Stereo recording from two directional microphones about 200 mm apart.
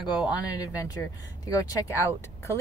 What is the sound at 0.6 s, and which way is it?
Speech, 20° left (ahead or behind).